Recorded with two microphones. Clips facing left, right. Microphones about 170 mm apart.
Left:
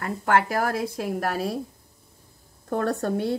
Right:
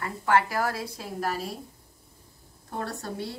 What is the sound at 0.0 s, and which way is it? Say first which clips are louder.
A woman's voice: left 2 dB; 55° left (ahead or behind).